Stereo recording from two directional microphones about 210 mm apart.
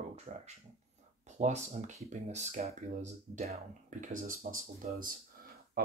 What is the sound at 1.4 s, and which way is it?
Speech, 35° right (ahead or behind).